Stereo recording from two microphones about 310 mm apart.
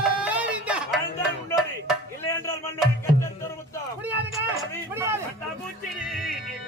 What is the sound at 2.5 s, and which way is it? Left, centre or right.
Music, centre.